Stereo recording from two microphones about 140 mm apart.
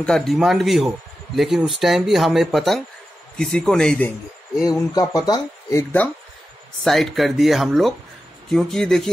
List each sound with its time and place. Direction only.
0.0 s speech: 5° left (ahead or behind)
4.6 s speech: 25° left (ahead or behind)
6.8 s speech: centre (ahead or behind)